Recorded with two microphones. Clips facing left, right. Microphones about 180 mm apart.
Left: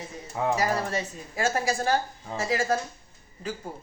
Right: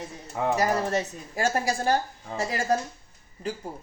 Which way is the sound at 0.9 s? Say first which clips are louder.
Right 3 dB; 40° right (ahead or behind).